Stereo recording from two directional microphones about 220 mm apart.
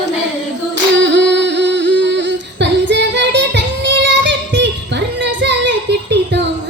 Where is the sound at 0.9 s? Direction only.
55° right (ahead or behind).